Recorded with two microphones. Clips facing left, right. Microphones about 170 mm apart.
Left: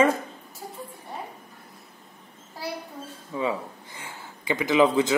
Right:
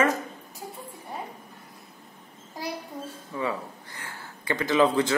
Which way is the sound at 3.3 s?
15° left (ahead or behind).